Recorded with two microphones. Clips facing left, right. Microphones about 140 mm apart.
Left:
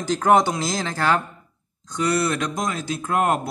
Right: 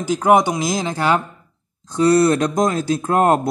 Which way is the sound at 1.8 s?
30° right (ahead or behind).